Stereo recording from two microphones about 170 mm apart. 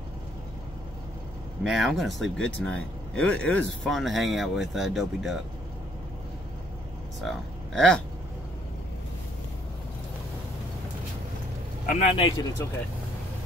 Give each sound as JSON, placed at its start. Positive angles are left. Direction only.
{"t": 1.6, "sound": "speech", "side_deg": 0}
{"t": 7.2, "sound": "speech", "side_deg": 5}
{"t": 11.8, "sound": "a man's voice", "side_deg": 50}
{"t": 12.2, "sound": "speech", "side_deg": 25}